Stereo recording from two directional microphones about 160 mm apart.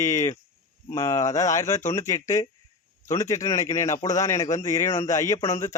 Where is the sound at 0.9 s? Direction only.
20° left (ahead or behind).